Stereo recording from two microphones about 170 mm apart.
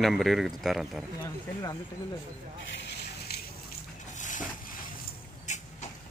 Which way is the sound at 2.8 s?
80° left.